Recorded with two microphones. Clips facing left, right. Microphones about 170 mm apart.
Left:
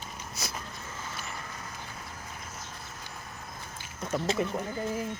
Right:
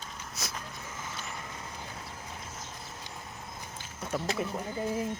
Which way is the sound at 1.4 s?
20° right (ahead or behind).